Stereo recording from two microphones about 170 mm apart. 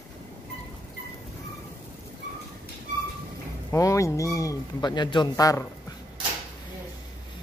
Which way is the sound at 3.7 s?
20° left (ahead or behind).